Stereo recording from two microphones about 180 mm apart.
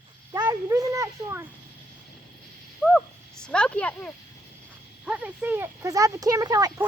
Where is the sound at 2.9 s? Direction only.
5° left (ahead or behind).